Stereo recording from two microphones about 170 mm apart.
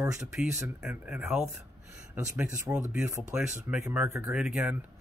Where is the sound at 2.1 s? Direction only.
15° right (ahead or behind).